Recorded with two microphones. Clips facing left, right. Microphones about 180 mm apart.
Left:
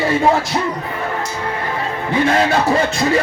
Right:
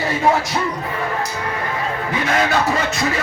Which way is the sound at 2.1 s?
30° left (ahead or behind).